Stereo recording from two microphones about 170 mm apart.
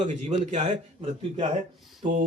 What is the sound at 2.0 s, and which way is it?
Speech, 50° right (ahead or behind).